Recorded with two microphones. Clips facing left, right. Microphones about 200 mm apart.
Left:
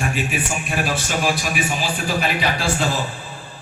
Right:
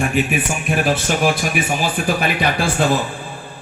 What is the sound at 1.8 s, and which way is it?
Speech, 55° right (ahead or behind).